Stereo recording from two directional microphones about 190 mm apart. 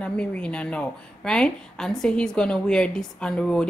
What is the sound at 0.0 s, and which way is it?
Speech, 5° left (ahead or behind).